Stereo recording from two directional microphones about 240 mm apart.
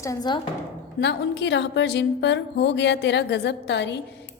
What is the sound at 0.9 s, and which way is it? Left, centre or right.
A woman's voice, left.